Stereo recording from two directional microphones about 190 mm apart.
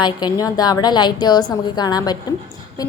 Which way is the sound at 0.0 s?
20° left (ahead or behind).